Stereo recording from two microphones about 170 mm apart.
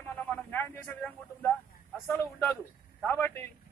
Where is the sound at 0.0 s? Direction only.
10° left (ahead or behind).